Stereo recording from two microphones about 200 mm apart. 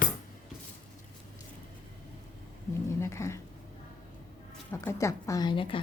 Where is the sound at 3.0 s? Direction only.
15° left (ahead or behind).